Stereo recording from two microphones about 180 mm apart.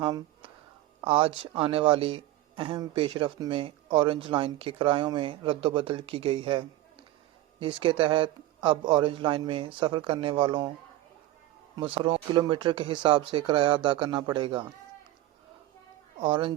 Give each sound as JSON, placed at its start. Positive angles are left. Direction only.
{"t": 0.0, "sound": "speech", "side_deg": -30}
{"t": 11.8, "sound": "speech", "side_deg": -30}
{"t": 16.2, "sound": "speech", "side_deg": -25}